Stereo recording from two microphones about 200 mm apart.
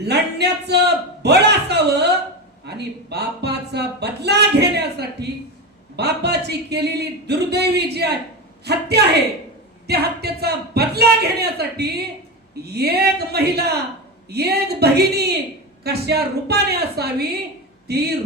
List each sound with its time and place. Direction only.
0.1 s a man's voice: 55° right (ahead or behind)